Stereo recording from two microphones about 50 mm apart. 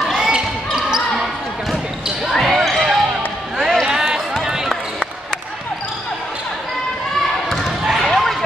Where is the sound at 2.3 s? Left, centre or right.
Centre.